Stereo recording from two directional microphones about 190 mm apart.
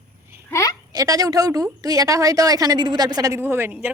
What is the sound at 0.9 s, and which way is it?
A woman's voice, 20° right (ahead or behind).